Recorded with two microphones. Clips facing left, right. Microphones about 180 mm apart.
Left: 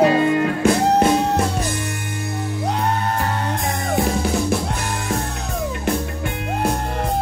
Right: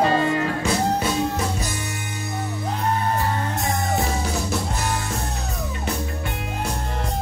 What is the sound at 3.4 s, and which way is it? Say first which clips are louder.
Music: left 1 dB; 55° left (ahead or behind).